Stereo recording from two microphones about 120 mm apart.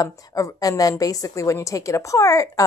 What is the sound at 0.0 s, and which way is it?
A woman's voice, 30° left (ahead or behind).